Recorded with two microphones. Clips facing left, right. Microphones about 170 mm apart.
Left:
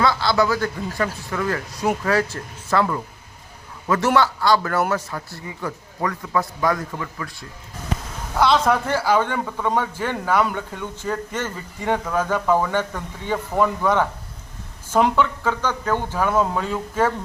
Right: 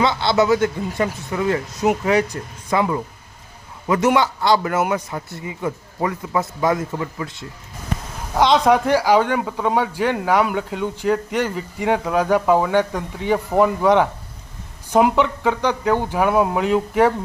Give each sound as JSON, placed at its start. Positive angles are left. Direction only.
{"t": 0.0, "sound": "a man's voice", "side_deg": -25}